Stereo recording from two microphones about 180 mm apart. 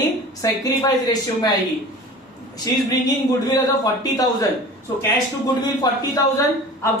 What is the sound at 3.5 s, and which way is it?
Speech, 20° left (ahead or behind).